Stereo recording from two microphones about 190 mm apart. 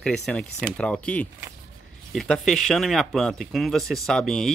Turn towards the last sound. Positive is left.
turn(degrees=0)  # may be behind; listen again after turning